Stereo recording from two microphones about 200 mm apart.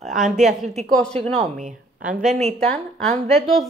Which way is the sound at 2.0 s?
5° right (ahead or behind).